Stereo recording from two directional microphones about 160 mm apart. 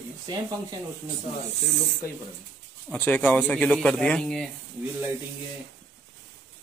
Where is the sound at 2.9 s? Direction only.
10° left (ahead or behind).